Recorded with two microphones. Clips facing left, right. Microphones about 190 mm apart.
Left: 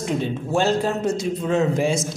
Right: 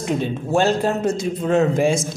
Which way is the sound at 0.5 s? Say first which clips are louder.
Right 2 dB; 50° right (ahead or behind).